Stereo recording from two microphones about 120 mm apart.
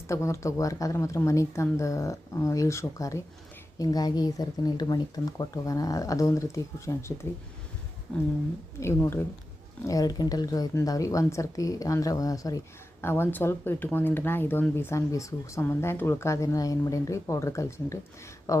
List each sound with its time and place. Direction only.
0.1 s speech: 25° left (ahead or behind)
8.8 s speech: 20° left (ahead or behind)
9.8 s speech: 30° left (ahead or behind)
13.0 s speech: 20° left (ahead or behind)